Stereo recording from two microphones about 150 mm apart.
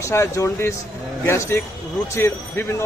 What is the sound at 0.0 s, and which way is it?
Speech, 20° left (ahead or behind).